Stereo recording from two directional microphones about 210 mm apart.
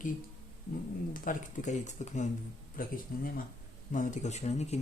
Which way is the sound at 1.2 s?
40° left (ahead or behind).